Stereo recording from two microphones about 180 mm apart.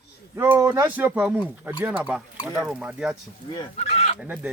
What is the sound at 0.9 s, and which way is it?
Speech, 10° right (ahead or behind).